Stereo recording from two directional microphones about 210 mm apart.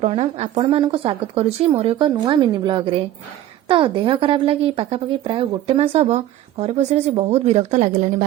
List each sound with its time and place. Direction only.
0.0 s speech: 30° right (ahead or behind)